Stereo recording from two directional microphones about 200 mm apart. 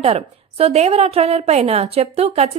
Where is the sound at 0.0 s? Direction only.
30° right (ahead or behind).